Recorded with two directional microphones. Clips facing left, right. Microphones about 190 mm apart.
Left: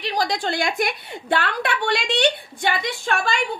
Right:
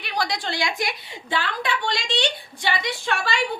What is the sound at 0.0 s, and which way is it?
A woman's voice, 40° left (ahead or behind).